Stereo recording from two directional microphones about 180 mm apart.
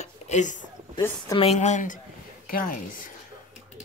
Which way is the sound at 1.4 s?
40° left (ahead or behind).